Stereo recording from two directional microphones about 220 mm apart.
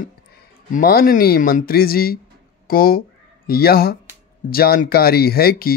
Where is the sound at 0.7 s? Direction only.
40° left (ahead or behind).